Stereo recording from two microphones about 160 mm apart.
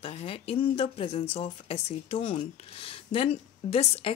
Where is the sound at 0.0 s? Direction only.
40° left (ahead or behind).